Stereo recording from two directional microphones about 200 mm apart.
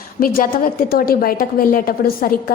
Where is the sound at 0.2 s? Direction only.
45° left (ahead or behind).